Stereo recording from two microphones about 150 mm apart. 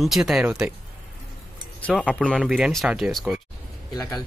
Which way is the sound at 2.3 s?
5° right (ahead or behind).